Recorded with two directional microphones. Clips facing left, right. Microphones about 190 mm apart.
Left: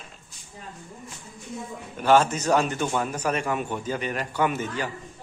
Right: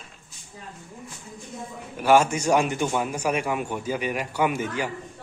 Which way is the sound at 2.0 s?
10° right (ahead or behind).